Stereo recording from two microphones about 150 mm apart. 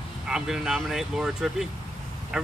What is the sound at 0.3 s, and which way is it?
Speech, 5° right (ahead or behind).